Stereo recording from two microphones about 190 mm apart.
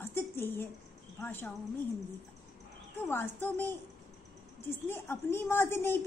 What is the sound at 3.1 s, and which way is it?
Speech, 10° left (ahead or behind).